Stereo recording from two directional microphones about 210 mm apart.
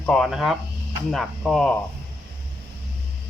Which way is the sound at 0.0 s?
5° left (ahead or behind).